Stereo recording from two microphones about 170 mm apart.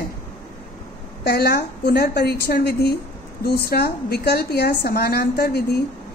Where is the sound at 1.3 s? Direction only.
70° left (ahead or behind).